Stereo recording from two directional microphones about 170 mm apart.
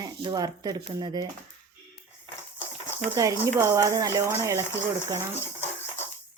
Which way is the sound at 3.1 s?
15° right (ahead or behind).